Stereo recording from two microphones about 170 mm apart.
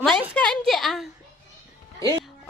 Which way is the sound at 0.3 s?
5° left (ahead or behind).